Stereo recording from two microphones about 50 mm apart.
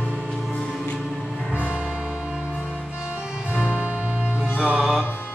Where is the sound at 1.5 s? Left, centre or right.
Right.